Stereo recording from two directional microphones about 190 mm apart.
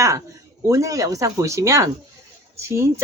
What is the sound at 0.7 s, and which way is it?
Speech, 15° right (ahead or behind).